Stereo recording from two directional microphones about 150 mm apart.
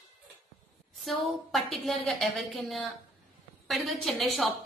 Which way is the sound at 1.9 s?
Centre (ahead or behind).